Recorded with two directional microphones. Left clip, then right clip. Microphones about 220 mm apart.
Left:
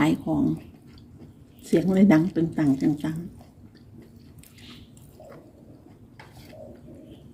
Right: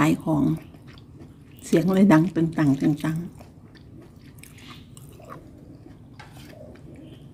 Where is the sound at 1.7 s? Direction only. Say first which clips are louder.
Right 2 dB; 15° right (ahead or behind).